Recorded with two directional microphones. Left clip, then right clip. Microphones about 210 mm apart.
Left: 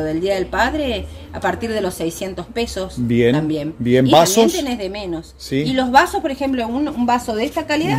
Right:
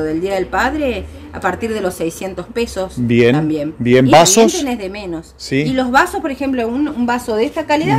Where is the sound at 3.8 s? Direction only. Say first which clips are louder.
Right 4 dB; 20° right (ahead or behind).